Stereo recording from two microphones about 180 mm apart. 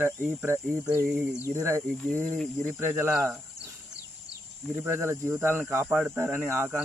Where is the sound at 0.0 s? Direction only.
15° right (ahead or behind).